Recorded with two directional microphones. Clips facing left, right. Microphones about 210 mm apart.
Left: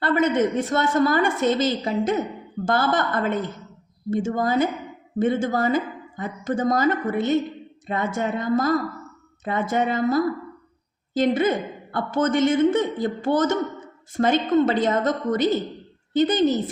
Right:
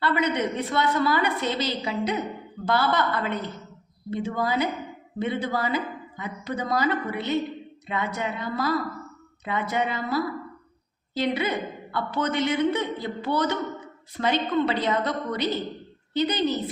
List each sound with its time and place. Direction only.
0.0 s a woman's voice: 45° left (ahead or behind)